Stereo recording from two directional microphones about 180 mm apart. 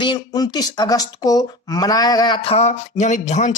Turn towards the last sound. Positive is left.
turn(degrees=40)  # may be behind; listen again after turning